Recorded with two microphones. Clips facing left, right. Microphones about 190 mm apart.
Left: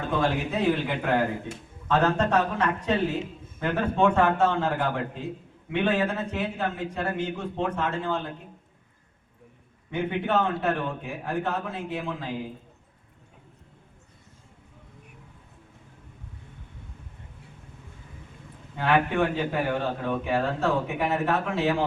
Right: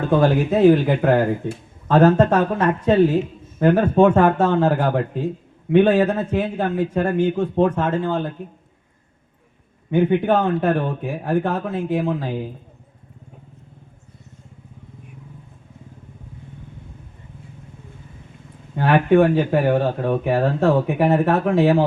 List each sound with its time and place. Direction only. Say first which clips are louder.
0.1 s a man's voice: right 9 dB; 40° right (ahead or behind)
9.9 s a man's voice: right 9 dB; 40° right (ahead or behind)
18.8 s speech: right 8 dB; 45° right (ahead or behind)